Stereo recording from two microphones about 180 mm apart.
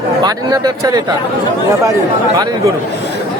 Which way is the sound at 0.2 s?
20° right (ahead or behind).